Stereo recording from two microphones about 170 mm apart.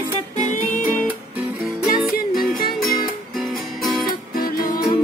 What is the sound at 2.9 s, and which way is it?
Music, centre (ahead or behind).